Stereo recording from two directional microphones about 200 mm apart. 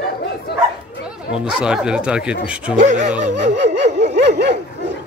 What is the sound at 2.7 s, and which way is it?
Speech, 35° right (ahead or behind).